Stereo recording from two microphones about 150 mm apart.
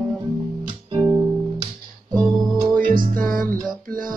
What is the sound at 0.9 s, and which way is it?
Music, 20° right (ahead or behind).